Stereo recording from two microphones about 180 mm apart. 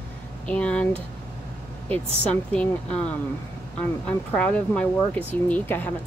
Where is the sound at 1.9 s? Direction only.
5° left (ahead or behind).